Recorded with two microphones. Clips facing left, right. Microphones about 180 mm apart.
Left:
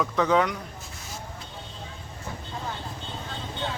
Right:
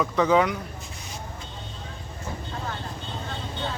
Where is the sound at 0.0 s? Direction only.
Centre (ahead or behind).